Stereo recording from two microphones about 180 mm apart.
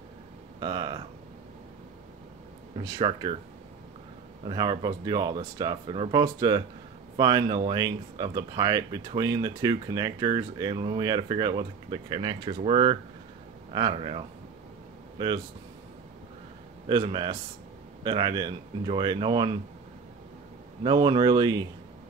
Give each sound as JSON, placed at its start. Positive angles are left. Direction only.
{"t": 0.6, "sound": "speech", "side_deg": -25}
{"t": 2.8, "sound": "speech", "side_deg": -25}
{"t": 4.5, "sound": "speech", "side_deg": -25}
{"t": 16.8, "sound": "speech", "side_deg": -25}
{"t": 20.8, "sound": "speech", "side_deg": -25}